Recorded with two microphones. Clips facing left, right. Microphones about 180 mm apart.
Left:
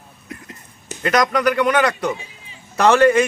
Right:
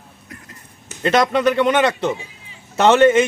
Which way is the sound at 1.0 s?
25° right (ahead or behind).